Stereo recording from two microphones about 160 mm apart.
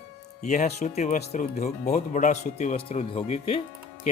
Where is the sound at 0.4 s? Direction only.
50° left (ahead or behind).